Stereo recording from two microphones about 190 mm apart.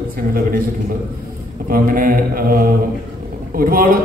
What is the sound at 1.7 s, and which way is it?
A man's voice, 45° right (ahead or behind).